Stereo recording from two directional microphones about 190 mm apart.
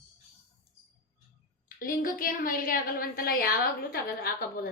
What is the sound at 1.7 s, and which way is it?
A woman's voice, 50° left (ahead or behind).